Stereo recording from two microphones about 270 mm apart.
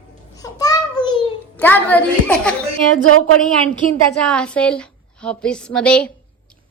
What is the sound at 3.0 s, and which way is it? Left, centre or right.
Speech, right.